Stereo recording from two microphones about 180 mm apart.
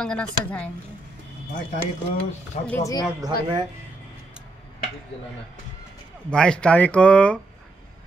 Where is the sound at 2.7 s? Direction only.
20° left (ahead or behind).